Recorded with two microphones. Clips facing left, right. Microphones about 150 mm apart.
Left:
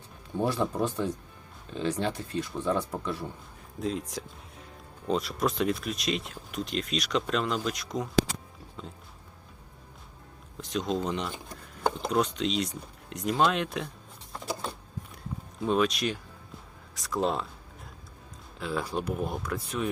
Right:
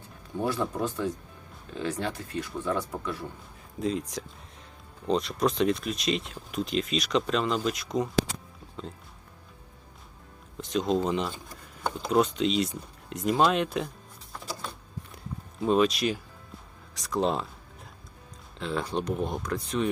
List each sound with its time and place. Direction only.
0.3 s speech: 20° left (ahead or behind)
3.8 s speech: centre (ahead or behind)
10.6 s speech: centre (ahead or behind)
15.6 s speech: centre (ahead or behind)
18.6 s speech: 5° left (ahead or behind)